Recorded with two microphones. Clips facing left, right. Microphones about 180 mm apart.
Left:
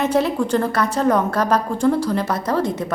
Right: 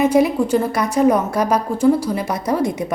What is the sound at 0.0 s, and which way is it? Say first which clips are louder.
A woman's voice: right 4 dB; 10° right (ahead or behind).